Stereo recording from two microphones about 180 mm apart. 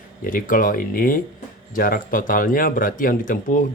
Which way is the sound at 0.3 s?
50° left (ahead or behind).